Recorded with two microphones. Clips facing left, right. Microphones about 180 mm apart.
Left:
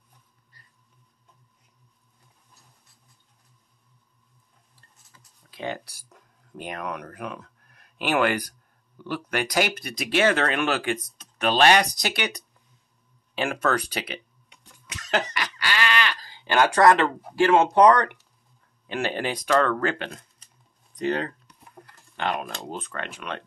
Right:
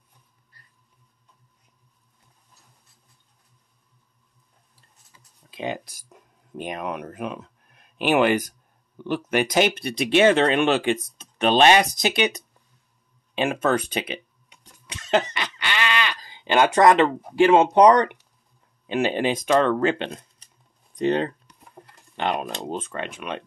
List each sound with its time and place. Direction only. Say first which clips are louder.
5.1 s speech: right 5 dB; 15° right (ahead or behind)
14.6 s cough: right 1 dB; 30° right (ahead or behind)
18.9 s speech: right 5 dB; 20° right (ahead or behind)